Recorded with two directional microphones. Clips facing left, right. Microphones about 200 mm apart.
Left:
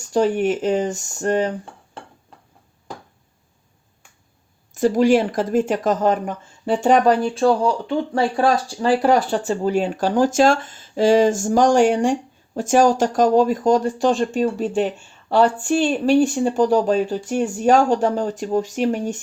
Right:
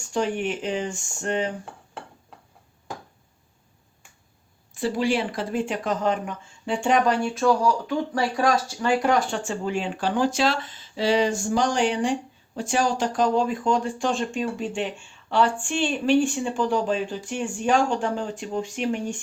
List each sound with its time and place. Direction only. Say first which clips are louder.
0.1 s speech: left 7 dB; 40° left (ahead or behind)
4.7 s speech: left 8 dB; 45° left (ahead or behind)